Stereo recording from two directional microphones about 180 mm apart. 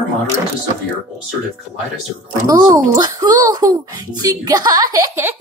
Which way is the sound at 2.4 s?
20° right (ahead or behind).